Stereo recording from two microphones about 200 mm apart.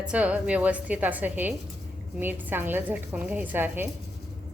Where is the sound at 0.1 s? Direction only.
5° right (ahead or behind).